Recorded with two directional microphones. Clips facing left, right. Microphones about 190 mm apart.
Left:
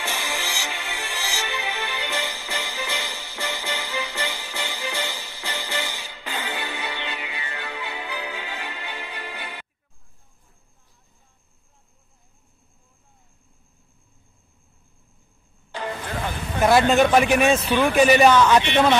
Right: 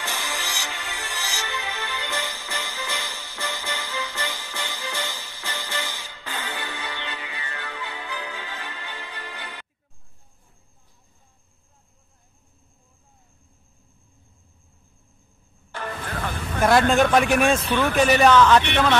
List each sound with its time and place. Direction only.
0.0 s music: 15° left (ahead or behind)
15.7 s music: 15° left (ahead or behind)
16.6 s speech: 5° left (ahead or behind)